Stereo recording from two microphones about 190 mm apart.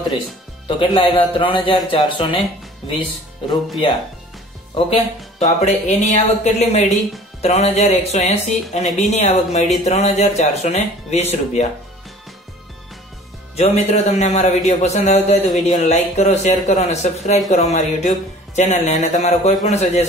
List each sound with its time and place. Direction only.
0.7 s speech: 25° left (ahead or behind)
4.7 s speech: 30° left (ahead or behind)
13.6 s speech: 35° left (ahead or behind)